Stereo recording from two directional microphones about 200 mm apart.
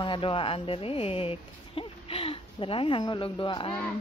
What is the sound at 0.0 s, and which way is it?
Speech, 25° left (ahead or behind).